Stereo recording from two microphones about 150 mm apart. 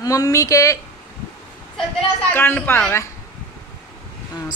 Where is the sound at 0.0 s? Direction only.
25° left (ahead or behind).